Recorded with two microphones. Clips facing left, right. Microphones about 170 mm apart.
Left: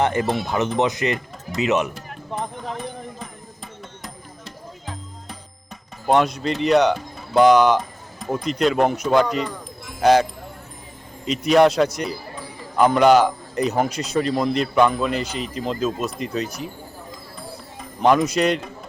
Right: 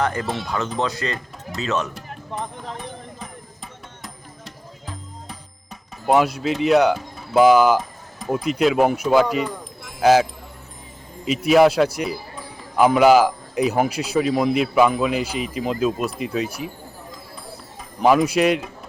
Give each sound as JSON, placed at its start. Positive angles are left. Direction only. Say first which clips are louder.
{"t": 0.0, "sound": "speech", "louder": "left 3 dB", "side_deg": 25}
{"t": 6.1, "sound": "speech", "louder": "right 1 dB", "side_deg": -5}
{"t": 11.3, "sound": "speech", "louder": "right 1 dB", "side_deg": -5}
{"t": 17.7, "sound": "speech", "louder": "right 1 dB", "side_deg": -5}